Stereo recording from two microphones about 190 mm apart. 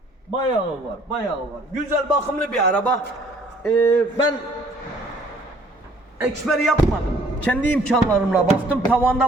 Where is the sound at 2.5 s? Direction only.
5° left (ahead or behind).